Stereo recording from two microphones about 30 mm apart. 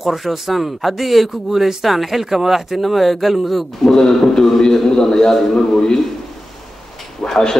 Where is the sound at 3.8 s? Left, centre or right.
Centre.